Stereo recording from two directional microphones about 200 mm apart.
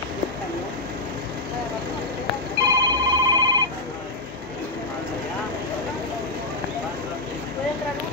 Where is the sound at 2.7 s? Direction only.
20° right (ahead or behind).